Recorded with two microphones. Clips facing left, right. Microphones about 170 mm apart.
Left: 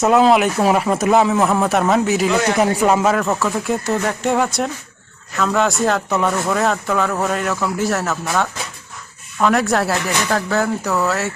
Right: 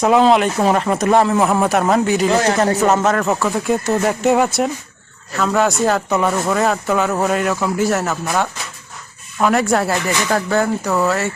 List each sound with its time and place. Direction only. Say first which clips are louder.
0.0 s speech: even; 5° left (ahead or behind)
2.3 s speech: right 2 dB; 35° right (ahead or behind)
2.6 s speech: even; 10° left (ahead or behind)